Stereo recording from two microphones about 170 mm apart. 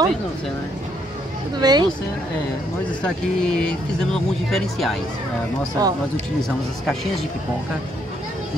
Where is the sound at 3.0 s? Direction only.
5° left (ahead or behind).